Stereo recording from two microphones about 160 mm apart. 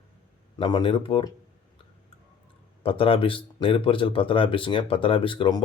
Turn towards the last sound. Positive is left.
turn(degrees=30)  # may be behind; listen again after turning